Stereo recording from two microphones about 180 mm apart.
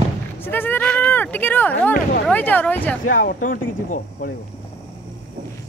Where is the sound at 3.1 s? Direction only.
50° left (ahead or behind).